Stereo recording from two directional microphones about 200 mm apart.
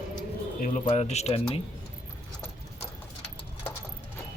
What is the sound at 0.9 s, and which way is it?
Speech, 35° left (ahead or behind).